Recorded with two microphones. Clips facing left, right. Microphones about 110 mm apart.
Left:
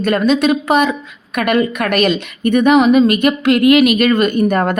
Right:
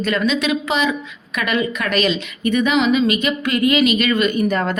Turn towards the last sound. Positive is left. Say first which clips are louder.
# left 4 dB
turn(degrees=50)  # may be behind; listen again after turning